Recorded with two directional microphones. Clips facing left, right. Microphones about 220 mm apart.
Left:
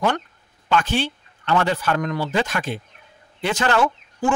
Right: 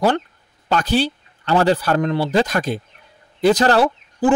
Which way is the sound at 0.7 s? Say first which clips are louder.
Right 3 dB; 40° right (ahead or behind).